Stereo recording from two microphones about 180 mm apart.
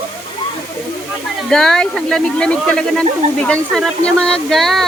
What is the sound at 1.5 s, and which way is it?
Speech, 5° left (ahead or behind).